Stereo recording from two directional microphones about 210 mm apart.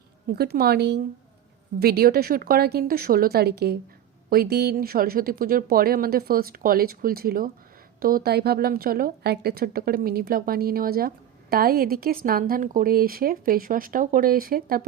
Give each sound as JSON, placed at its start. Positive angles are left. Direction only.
{"t": 0.3, "sound": "a woman's voice", "side_deg": -45}